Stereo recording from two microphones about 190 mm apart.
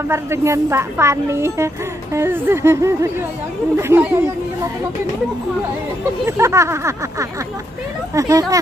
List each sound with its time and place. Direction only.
0.1 s speech: 15° right (ahead or behind)
6.2 s speech: 15° right (ahead or behind)